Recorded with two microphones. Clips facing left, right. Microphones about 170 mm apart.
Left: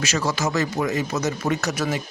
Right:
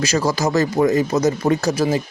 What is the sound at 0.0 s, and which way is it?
Speech, 35° right (ahead or behind).